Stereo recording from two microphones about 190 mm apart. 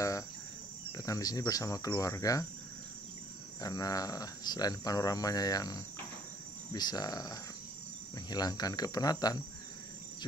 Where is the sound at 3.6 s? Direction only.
20° left (ahead or behind).